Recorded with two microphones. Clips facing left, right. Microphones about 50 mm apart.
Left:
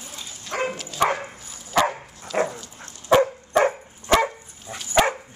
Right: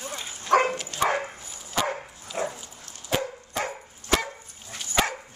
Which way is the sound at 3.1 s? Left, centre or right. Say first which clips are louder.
Left 11 dB; left.